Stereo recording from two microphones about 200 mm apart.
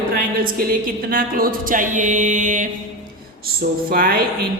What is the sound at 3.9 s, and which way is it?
Speech, 45° right (ahead or behind).